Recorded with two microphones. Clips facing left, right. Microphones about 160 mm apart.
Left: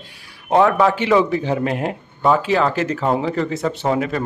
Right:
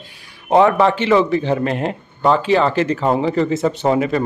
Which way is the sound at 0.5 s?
Centre (ahead or behind).